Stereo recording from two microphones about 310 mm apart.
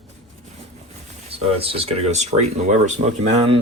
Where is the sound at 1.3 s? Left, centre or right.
Centre.